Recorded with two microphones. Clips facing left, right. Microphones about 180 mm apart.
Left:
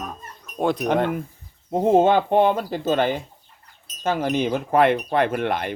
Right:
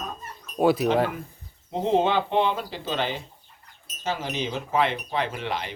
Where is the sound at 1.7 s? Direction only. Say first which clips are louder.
Left 6 dB; 50° left (ahead or behind).